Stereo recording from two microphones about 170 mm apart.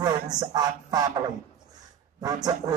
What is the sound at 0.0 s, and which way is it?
Speech, 25° right (ahead or behind).